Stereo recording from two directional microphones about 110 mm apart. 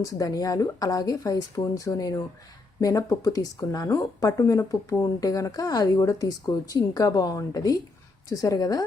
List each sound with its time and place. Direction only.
0.0 s speech: 35° left (ahead or behind)